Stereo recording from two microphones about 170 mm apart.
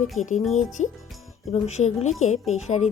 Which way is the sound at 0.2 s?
45° left (ahead or behind).